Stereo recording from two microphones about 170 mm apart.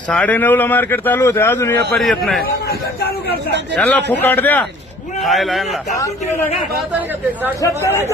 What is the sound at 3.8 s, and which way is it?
A man's voice, 10° left (ahead or behind).